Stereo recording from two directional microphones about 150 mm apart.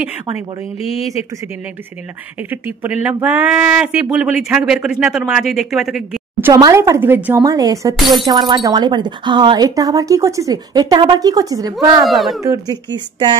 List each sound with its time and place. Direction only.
2.5 s speech: 10° right (ahead or behind)
6.4 s speech: 20° right (ahead or behind)
7.4 s speech: 25° right (ahead or behind)
12.0 s speech: centre (ahead or behind)
12.4 s speech: 25° right (ahead or behind)